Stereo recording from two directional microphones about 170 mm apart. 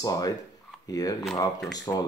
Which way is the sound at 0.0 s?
20° left (ahead or behind).